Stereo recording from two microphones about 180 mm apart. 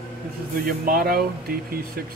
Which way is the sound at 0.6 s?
55° right (ahead or behind).